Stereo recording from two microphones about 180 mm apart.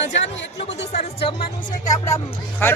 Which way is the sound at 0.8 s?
35° left (ahead or behind).